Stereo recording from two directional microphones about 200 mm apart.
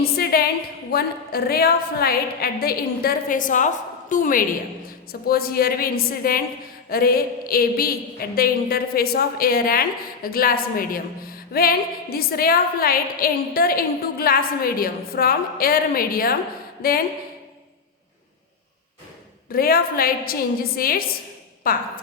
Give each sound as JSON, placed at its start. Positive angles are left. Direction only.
{"t": 0.0, "sound": "a woman's voice", "side_deg": 50}
{"t": 19.5, "sound": "a woman's voice", "side_deg": 50}